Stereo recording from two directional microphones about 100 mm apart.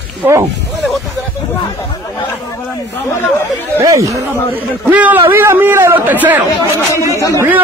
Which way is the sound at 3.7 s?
30° right (ahead or behind).